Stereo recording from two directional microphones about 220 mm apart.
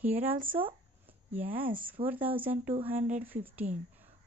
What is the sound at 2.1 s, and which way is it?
Speech, 10° right (ahead or behind).